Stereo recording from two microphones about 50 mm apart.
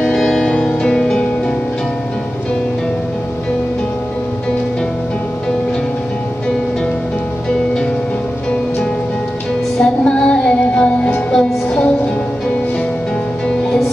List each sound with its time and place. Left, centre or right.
0.0 s music: centre
9.8 s music: centre